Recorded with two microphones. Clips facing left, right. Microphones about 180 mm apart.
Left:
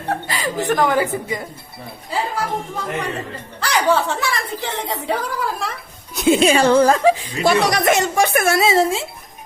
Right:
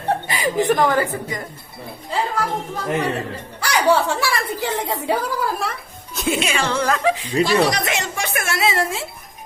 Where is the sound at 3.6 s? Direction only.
10° right (ahead or behind).